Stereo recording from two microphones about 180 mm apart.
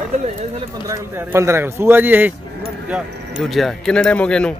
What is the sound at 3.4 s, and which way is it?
A man's voice, centre (ahead or behind).